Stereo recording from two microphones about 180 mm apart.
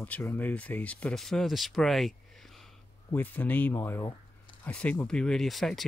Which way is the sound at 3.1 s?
10° left (ahead or behind).